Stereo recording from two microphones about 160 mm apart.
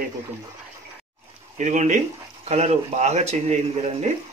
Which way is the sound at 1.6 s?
50° right (ahead or behind).